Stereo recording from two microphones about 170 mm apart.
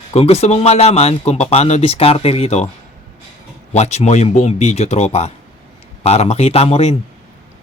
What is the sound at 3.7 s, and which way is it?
Speech, 40° left (ahead or behind).